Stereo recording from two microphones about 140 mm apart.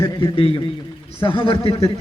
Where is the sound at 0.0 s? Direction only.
40° left (ahead or behind).